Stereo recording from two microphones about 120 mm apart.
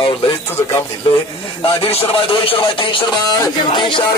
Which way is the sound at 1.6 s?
50° left (ahead or behind).